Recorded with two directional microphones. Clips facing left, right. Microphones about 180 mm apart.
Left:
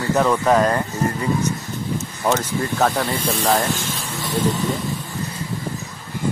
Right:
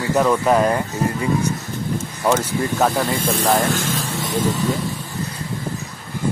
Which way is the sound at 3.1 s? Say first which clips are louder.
Right 1 dB; 45° right (ahead or behind).